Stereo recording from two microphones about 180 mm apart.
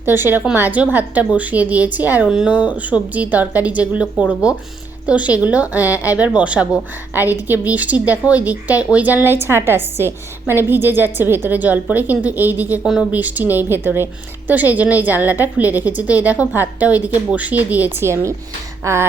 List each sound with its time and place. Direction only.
0.0 s a woman's voice: 10° right (ahead or behind)